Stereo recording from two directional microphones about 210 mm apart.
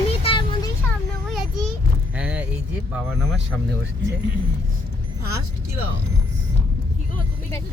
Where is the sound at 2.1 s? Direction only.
5° right (ahead or behind).